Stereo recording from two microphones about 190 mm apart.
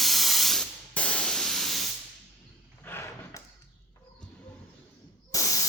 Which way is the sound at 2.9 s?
15° left (ahead or behind).